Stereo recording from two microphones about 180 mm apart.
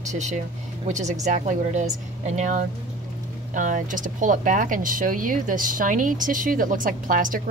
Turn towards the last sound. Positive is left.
turn(degrees=-50)  # may be behind; listen again after turning